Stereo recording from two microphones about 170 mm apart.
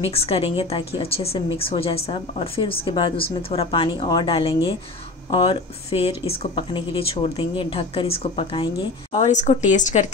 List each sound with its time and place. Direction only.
0.0 s a woman's voice: 35° left (ahead or behind)
9.1 s speech: 45° left (ahead or behind)